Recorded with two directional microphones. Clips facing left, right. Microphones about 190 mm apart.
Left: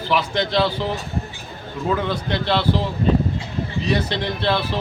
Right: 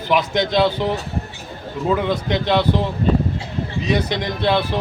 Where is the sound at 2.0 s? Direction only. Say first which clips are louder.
Right 3 dB; 15° right (ahead or behind).